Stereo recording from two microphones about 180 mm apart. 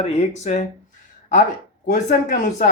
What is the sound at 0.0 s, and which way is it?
Speech, 40° left (ahead or behind).